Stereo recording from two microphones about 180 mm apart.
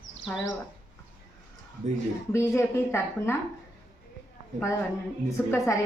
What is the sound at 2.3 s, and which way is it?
A woman's voice, 15° left (ahead or behind).